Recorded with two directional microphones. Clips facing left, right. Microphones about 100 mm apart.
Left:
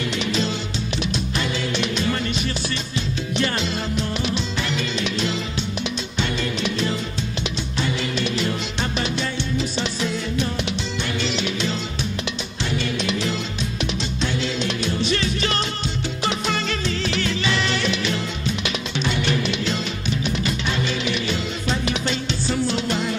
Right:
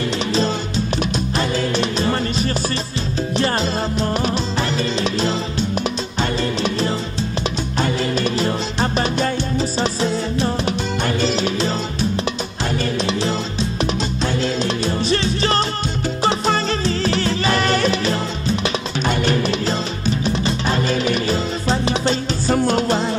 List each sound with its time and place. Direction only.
1.4 s music: 40° right (ahead or behind)
7.8 s music: 40° right (ahead or behind)
12.9 s music: 35° right (ahead or behind)